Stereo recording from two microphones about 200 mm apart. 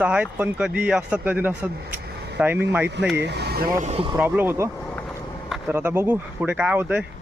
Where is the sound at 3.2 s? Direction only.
55° right (ahead or behind).